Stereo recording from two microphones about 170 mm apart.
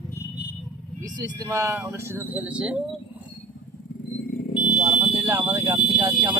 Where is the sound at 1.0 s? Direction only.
20° right (ahead or behind).